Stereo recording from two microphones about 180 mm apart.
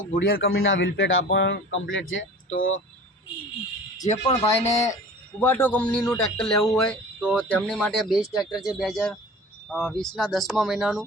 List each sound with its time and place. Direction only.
0.2 s a man's voice: 60° left (ahead or behind)
0.5 s speech: 90° left
4.3 s speech: 15° left (ahead or behind); by 7.4 s 5° right (ahead or behind)
7.4 s speech: 5° left (ahead or behind)